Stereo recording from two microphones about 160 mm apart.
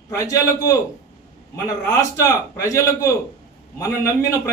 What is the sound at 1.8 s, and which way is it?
Speech, 20° left (ahead or behind).